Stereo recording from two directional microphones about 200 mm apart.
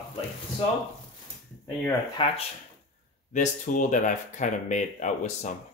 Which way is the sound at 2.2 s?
25° left (ahead or behind).